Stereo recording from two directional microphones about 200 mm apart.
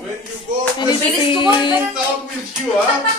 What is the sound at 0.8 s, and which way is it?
Music, 20° left (ahead or behind).